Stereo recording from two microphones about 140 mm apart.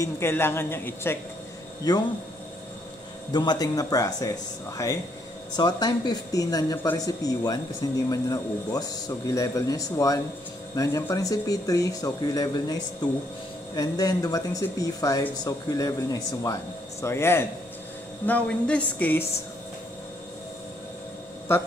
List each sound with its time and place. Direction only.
0.0 s a woman's voice: 15° left (ahead or behind)
1.9 s speech: 30° left (ahead or behind)
3.3 s speech: 30° left (ahead or behind)
5.6 s a woman's voice: 30° left (ahead or behind); by 19.2 s 10° left (ahead or behind)
21.5 s a woman's voice: 15° left (ahead or behind)